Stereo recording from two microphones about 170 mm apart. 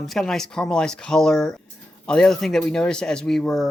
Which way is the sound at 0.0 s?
Centre (ahead or behind).